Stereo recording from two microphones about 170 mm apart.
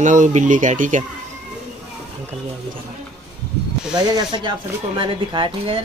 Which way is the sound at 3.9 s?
25° right (ahead or behind).